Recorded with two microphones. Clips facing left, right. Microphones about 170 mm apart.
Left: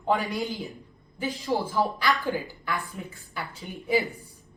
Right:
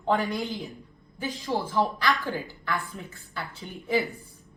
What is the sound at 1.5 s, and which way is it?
Speech, 15° left (ahead or behind).